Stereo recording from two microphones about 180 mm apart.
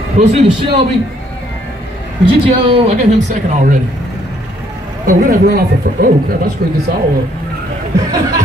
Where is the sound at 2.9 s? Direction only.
45° right (ahead or behind).